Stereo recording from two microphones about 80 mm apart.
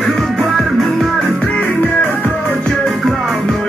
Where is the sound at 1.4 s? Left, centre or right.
Left.